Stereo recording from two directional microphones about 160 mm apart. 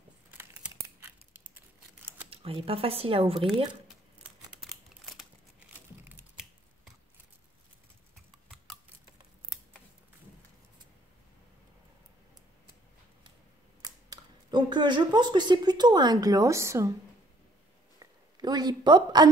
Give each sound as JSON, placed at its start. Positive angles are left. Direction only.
{"t": 0.3, "sound": "crumpling", "side_deg": -10}
{"t": 2.2, "sound": "speech", "side_deg": -35}
{"t": 4.6, "sound": "crumpling", "side_deg": 0}
{"t": 8.7, "sound": "a sound", "side_deg": 5}
{"t": 13.8, "sound": "speech", "side_deg": -25}
{"t": 17.9, "sound": "a sound", "side_deg": -25}